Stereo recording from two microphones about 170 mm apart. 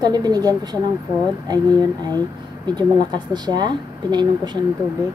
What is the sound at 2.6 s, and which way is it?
Speech, 25° right (ahead or behind).